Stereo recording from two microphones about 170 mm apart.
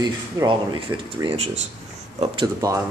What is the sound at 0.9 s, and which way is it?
Speech, 10° right (ahead or behind).